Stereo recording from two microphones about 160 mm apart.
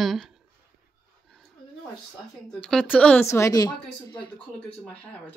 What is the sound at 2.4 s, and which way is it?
Speech, 5° left (ahead or behind).